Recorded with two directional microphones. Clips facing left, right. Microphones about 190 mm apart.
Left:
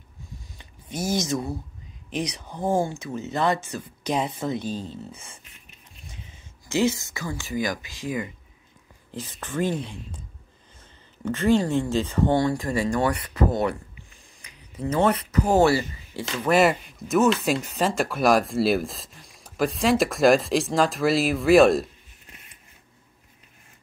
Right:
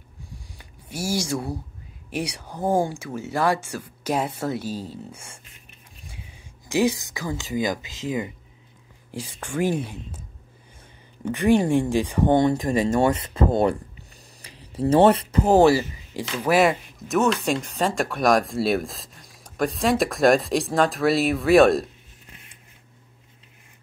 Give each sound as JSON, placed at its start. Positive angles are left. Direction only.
{"t": 0.3, "sound": "a sound", "side_deg": -10}
{"t": 2.0, "sound": "speech", "side_deg": -10}
{"t": 11.2, "sound": "speech", "side_deg": -15}
{"t": 15.5, "sound": "speech", "side_deg": -15}
{"t": 16.5, "sound": "speech", "side_deg": 0}